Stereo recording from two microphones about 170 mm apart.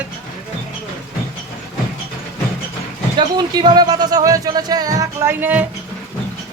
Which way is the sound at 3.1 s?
25° right (ahead or behind).